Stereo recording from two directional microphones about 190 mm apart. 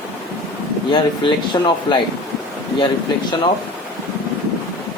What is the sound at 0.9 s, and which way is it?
Speech, 25° left (ahead or behind).